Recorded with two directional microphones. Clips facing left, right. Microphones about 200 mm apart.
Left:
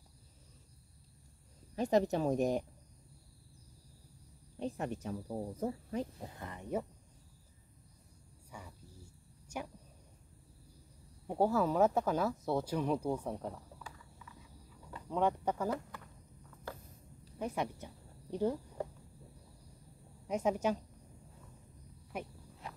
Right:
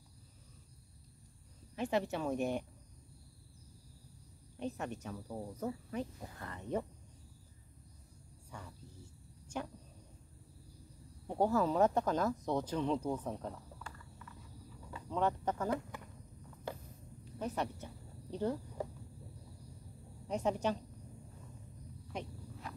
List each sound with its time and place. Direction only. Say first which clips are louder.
1.8 s speech: left 5 dB; 40° left (ahead or behind)
4.6 s speech: left 2 dB; 30° left (ahead or behind); by 6.9 s 10° left (ahead or behind)
8.5 s cricket: even; 10° left (ahead or behind)
11.2 s speech: left 1 dB; 10° left (ahead or behind)
17.4 s speech: left 1 dB; 10° left (ahead or behind)
20.2 s speech: left 2 dB; 10° left (ahead or behind)
22.1 s speech: left 1 dB; 5° left (ahead or behind)